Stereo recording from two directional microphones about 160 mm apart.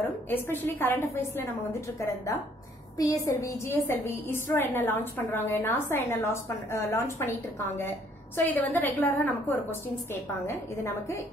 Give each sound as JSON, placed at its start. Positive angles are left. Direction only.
{"t": 0.0, "sound": "a woman's voice", "side_deg": 15}